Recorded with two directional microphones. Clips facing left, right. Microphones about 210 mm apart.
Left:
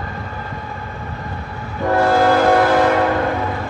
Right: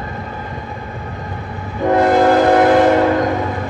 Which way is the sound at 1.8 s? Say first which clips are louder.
Right 3 dB; 20° right (ahead or behind).